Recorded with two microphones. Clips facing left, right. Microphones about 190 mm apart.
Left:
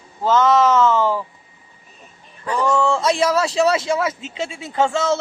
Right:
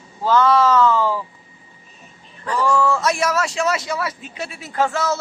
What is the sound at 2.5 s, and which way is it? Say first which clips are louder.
A man's voice: even; 20° left (ahead or behind).